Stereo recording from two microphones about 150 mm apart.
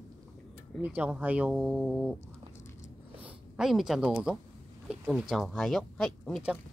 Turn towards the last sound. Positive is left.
turn(degrees=5)  # may be behind; listen again after turning